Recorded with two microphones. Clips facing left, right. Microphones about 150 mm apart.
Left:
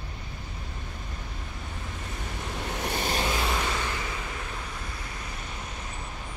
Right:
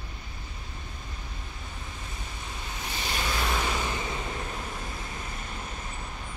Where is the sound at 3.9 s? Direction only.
20° right (ahead or behind).